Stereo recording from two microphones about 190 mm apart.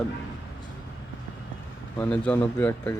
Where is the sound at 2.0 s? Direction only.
10° left (ahead or behind).